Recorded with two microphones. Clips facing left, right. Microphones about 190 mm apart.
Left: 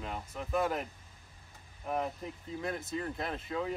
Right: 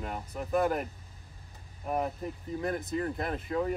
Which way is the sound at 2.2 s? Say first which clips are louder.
Right 4 dB; 45° right (ahead or behind).